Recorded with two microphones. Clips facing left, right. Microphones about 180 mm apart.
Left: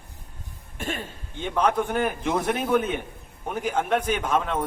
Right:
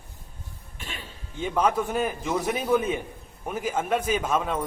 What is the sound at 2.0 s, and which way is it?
Speech, 75° left (ahead or behind).